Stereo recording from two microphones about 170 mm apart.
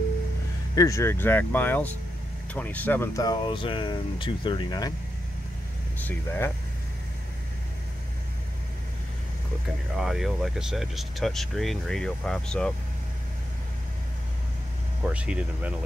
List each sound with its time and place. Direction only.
0.7 s speech: 20° left (ahead or behind)
5.9 s speech: 10° left (ahead or behind)
9.9 s speech: centre (ahead or behind)
15.0 s speech: 5° right (ahead or behind)